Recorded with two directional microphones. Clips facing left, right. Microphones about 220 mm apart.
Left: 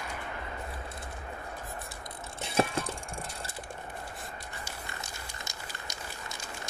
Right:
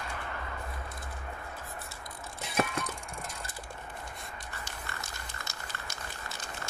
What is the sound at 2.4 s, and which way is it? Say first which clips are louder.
Bicycle: left 3 dB; 30° left (ahead or behind).